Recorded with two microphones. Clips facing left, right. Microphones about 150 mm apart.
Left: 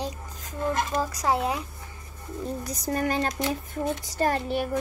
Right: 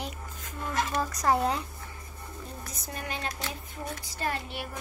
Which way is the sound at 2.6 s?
40° left (ahead or behind).